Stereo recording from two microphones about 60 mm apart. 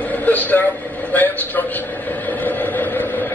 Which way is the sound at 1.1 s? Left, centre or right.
Left.